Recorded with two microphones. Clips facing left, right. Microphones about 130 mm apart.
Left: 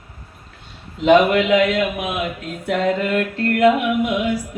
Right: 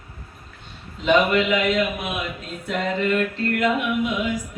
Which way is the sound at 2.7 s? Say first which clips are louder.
Left 4 dB; 70° left (ahead or behind).